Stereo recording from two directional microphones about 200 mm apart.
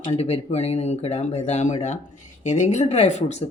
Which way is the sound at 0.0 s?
30° left (ahead or behind).